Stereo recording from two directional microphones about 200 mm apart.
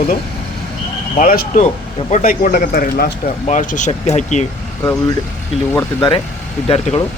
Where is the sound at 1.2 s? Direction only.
40° left (ahead or behind).